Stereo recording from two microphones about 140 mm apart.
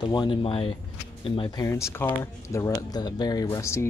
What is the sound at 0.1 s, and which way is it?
Speech, 35° left (ahead or behind).